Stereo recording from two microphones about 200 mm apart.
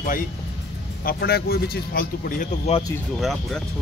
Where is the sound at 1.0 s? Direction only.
50° left (ahead or behind).